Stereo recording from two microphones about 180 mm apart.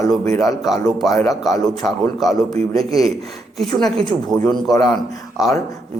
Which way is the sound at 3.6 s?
Centre (ahead or behind).